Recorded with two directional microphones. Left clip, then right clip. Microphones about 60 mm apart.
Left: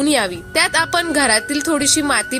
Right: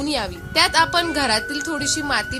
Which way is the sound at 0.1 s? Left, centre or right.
Left.